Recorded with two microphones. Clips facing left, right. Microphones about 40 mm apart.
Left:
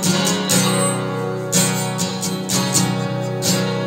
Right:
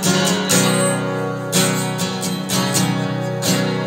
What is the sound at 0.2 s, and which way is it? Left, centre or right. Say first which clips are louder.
Music: right 2 dB; centre.